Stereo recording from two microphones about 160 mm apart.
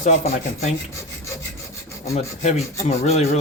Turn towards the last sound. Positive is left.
turn(degrees=45)  # may be behind; listen again after turning